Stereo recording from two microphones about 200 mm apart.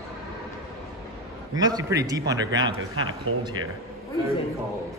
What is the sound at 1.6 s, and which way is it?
A man's voice, 20° right (ahead or behind).